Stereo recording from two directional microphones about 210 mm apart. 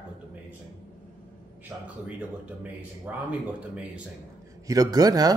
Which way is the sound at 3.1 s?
5° right (ahead or behind).